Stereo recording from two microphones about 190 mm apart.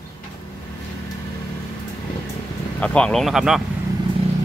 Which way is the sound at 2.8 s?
5° left (ahead or behind).